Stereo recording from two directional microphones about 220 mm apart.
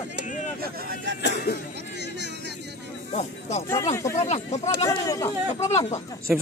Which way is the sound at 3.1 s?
30° left (ahead or behind).